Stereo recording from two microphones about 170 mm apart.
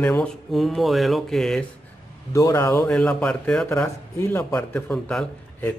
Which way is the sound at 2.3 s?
20° left (ahead or behind).